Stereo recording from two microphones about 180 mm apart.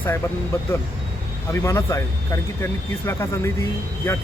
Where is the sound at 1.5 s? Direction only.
15° left (ahead or behind).